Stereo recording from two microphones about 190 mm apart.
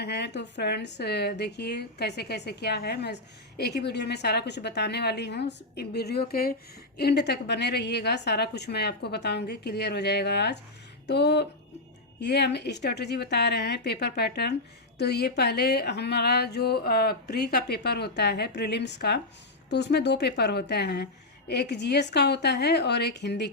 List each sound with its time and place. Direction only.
0.0 s a woman's voice: 60° left (ahead or behind)